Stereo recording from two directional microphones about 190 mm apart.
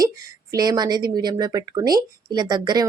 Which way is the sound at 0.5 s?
20° right (ahead or behind).